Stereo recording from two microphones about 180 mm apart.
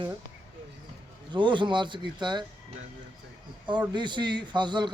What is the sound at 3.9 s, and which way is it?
Speech, 25° right (ahead or behind).